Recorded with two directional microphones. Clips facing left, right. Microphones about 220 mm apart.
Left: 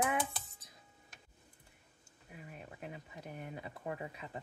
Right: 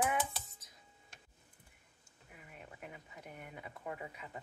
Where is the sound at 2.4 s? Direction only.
25° left (ahead or behind).